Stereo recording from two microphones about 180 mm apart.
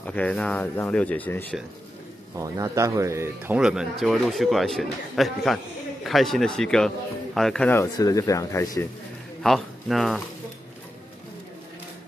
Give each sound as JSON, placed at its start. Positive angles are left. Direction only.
{"t": 0.0, "sound": "speech", "side_deg": 5}
{"t": 2.3, "sound": "speech", "side_deg": -15}
{"t": 9.4, "sound": "speech", "side_deg": 0}